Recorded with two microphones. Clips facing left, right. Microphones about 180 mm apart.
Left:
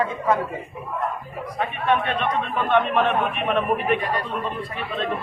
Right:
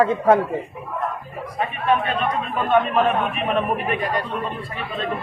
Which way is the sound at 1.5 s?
5° right (ahead or behind).